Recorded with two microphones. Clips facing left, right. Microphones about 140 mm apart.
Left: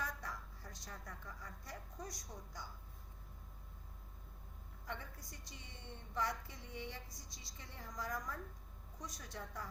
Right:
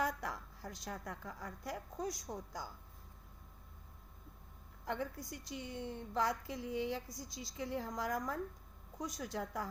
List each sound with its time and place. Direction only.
0.0 s a woman's voice: 90° right
4.9 s a woman's voice: 90° right
9.0 s a woman's voice: 80° right